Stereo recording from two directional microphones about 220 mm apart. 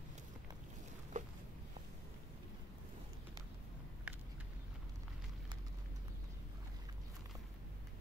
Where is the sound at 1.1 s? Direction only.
35° right (ahead or behind).